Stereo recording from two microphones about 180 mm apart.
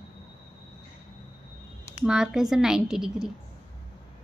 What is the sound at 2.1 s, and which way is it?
A woman's voice, 5° right (ahead or behind).